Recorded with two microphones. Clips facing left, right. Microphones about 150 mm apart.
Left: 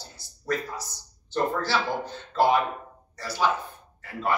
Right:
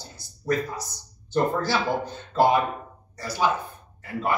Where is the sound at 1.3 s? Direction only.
15° right (ahead or behind).